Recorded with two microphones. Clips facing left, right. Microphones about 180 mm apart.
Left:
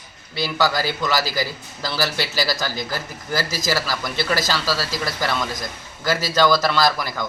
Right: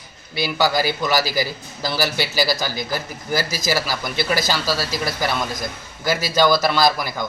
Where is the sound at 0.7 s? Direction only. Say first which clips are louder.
Right 2 dB; 5° right (ahead or behind).